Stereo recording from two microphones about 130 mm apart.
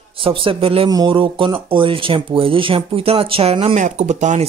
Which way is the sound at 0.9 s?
35° right (ahead or behind).